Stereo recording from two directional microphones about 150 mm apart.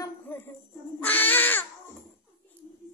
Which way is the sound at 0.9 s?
10° left (ahead or behind).